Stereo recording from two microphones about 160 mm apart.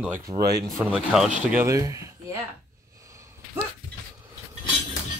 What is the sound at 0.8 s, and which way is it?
Speech, 5° right (ahead or behind).